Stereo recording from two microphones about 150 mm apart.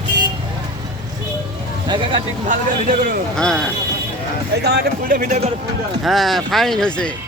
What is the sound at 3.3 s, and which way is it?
Speech, 5° left (ahead or behind).